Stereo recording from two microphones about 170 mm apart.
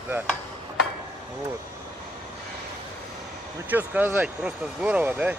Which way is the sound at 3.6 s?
10° right (ahead or behind).